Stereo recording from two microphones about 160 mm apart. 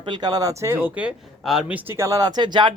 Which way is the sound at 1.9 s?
20° right (ahead or behind).